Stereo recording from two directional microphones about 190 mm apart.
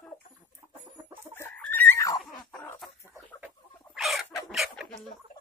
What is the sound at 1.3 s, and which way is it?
Chicken, 10° left (ahead or behind).